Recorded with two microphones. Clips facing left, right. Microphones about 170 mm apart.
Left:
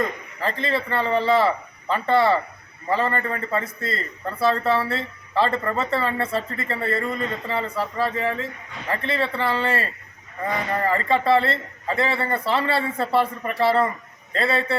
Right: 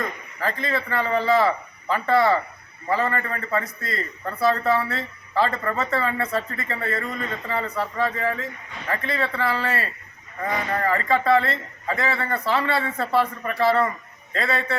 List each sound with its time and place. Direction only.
0.4 s a man's voice: 30° left (ahead or behind)